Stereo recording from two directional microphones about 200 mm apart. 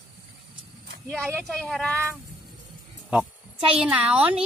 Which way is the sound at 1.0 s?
5° left (ahead or behind).